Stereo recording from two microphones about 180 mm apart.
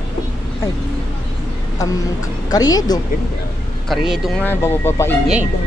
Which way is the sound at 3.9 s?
Centre (ahead or behind).